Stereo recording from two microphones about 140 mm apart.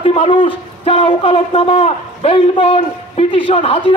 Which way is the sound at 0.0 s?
45° left (ahead or behind).